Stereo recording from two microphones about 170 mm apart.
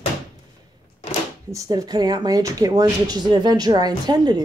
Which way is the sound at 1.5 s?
20° right (ahead or behind).